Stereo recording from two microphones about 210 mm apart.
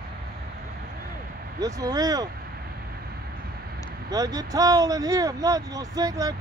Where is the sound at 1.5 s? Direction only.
15° right (ahead or behind).